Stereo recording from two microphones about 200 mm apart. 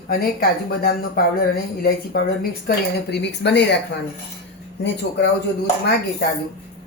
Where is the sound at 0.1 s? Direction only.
50° left (ahead or behind).